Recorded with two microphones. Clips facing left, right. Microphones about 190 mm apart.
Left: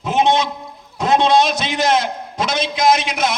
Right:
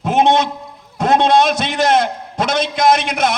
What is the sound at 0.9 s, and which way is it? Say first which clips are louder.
A man's voice: right 1 dB; 55° right (ahead or behind).